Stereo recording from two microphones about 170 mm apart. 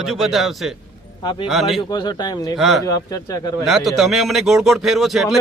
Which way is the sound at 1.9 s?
25° left (ahead or behind).